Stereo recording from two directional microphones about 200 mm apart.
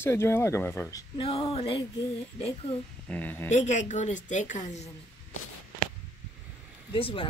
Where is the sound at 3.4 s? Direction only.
35° left (ahead or behind).